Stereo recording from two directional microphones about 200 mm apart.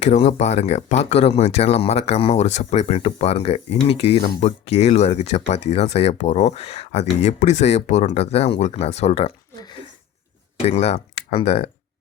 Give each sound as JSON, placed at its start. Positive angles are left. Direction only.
{"t": 0.0, "sound": "speech", "side_deg": 35}
{"t": 10.7, "sound": "speech", "side_deg": 30}